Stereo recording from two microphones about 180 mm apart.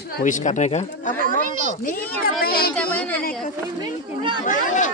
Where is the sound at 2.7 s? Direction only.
10° left (ahead or behind).